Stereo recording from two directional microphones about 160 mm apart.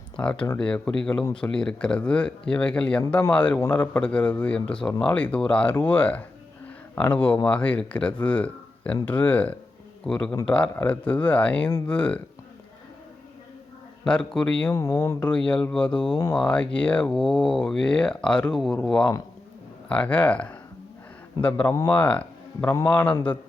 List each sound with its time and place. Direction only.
0.2 s speech: 10° left (ahead or behind)
14.0 s speech: 5° left (ahead or behind)
14.7 s speech: 20° left (ahead or behind)
15.3 s speech: 5° left (ahead or behind)